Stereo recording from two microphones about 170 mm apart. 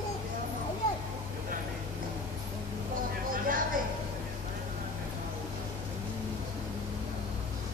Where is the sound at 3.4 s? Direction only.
55° right (ahead or behind).